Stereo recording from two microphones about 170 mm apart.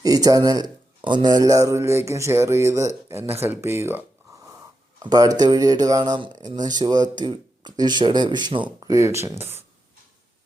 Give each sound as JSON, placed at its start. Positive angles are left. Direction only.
{"t": 0.0, "sound": "a man's voice", "side_deg": -20}
{"t": 5.0, "sound": "speech", "side_deg": -20}